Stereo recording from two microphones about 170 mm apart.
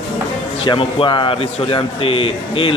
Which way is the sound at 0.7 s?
30° left (ahead or behind).